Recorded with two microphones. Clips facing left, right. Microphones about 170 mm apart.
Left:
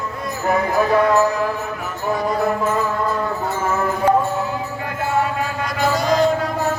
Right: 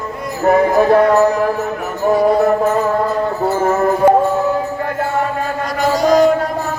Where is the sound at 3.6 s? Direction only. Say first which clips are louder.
Right 7 dB; 40° right (ahead or behind).